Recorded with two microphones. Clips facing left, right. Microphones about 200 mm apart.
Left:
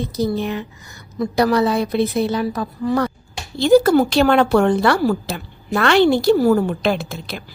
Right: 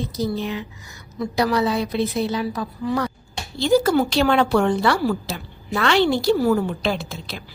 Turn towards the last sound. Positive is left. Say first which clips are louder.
# left 4 dB
turn(degrees=55)  # may be behind; listen again after turning